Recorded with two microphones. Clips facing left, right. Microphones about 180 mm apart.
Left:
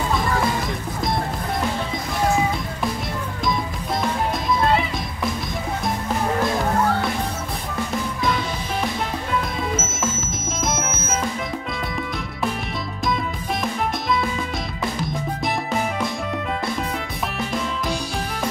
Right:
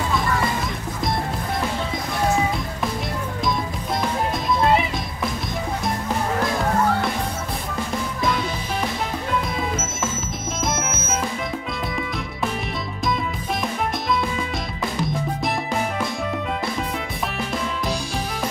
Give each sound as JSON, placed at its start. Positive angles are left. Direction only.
{"t": 4.0, "sound": "music", "side_deg": 0}
{"t": 9.3, "sound": "music", "side_deg": 0}